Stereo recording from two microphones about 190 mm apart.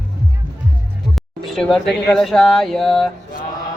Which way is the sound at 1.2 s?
Centre (ahead or behind).